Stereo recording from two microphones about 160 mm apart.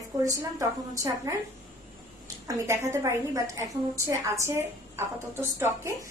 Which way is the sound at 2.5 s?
15° right (ahead or behind).